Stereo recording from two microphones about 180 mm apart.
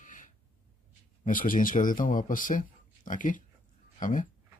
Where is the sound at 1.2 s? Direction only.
50° left (ahead or behind).